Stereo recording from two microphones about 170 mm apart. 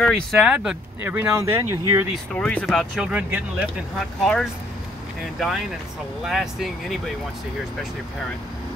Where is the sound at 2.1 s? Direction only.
5° left (ahead or behind).